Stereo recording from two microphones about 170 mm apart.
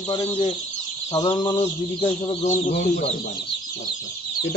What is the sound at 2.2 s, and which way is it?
Speech, 35° left (ahead or behind).